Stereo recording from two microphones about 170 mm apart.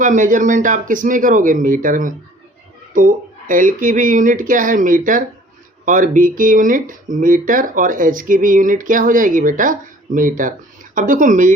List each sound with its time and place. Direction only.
0.0 s speech: 50° right (ahead or behind)